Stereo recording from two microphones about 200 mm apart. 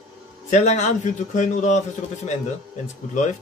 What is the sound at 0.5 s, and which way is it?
A man's voice, 35° left (ahead or behind).